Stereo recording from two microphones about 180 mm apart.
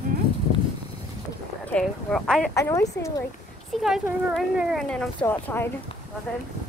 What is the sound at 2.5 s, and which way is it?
Speech, 15° left (ahead or behind).